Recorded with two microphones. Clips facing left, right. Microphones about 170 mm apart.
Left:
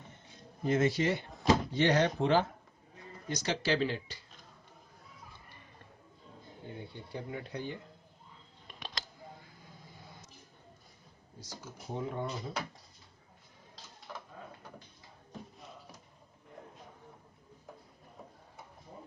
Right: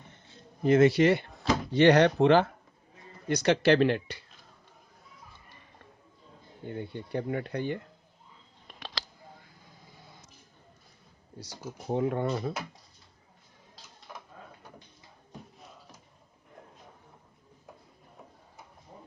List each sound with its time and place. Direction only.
0.6 s speech: 70° right (ahead or behind)
6.7 s speech: 65° right (ahead or behind)
11.3 s speech: 70° right (ahead or behind)
14.1 s printer: 5° right (ahead or behind)